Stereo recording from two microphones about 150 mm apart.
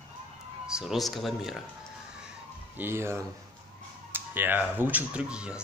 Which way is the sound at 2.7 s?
15° right (ahead or behind).